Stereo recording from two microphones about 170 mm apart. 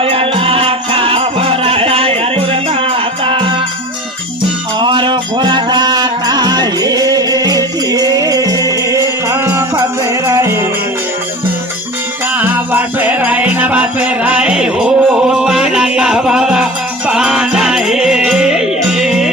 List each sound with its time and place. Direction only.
0.0 s music: 35° right (ahead or behind)
4.8 s music: 30° right (ahead or behind)
12.4 s music: 10° right (ahead or behind)